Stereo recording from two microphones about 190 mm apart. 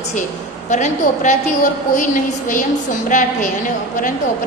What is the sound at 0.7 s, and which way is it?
A woman's voice, 40° left (ahead or behind).